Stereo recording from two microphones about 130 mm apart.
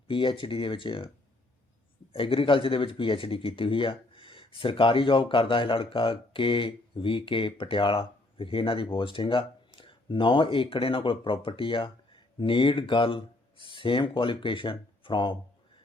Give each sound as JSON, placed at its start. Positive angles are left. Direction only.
{"t": 0.1, "sound": "speech", "side_deg": 40}
{"t": 2.1, "sound": "speech", "side_deg": 45}